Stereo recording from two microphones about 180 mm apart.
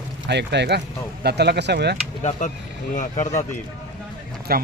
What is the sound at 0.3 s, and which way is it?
Speech, 70° right (ahead or behind).